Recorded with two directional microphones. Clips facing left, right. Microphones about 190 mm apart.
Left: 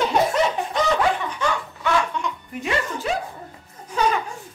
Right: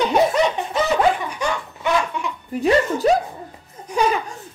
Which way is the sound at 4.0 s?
10° right (ahead or behind).